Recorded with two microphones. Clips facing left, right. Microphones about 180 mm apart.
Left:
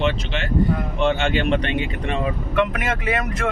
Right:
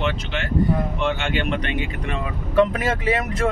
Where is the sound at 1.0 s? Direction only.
30° left (ahead or behind).